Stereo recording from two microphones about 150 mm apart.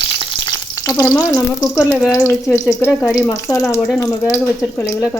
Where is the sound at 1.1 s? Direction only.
20° left (ahead or behind).